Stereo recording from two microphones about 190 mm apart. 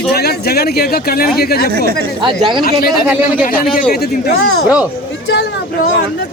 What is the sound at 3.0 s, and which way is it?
Speech, 5° right (ahead or behind).